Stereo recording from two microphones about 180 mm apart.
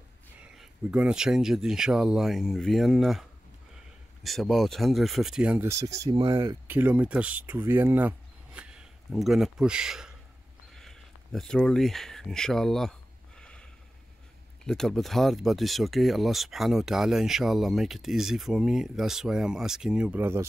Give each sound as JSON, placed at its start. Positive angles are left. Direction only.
{"t": 0.4, "sound": "speech", "side_deg": -5}
{"t": 6.2, "sound": "speech", "side_deg": -25}
{"t": 6.7, "sound": "speech", "side_deg": -10}
{"t": 13.4, "sound": "a sound", "side_deg": 5}
{"t": 14.6, "sound": "speech", "side_deg": 5}